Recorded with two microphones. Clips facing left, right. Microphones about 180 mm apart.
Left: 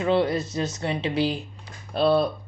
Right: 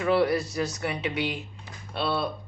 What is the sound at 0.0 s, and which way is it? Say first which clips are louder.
Speech: left 1 dB; 20° left (ahead or behind).